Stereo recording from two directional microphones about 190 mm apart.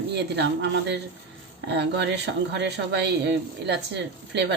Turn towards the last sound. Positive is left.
turn(degrees=-65)  # may be behind; listen again after turning